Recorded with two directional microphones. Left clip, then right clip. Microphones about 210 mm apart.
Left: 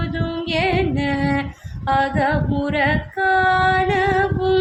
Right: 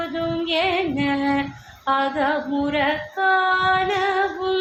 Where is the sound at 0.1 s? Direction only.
20° left (ahead or behind).